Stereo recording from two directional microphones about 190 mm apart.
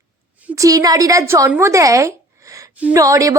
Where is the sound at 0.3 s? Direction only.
10° right (ahead or behind).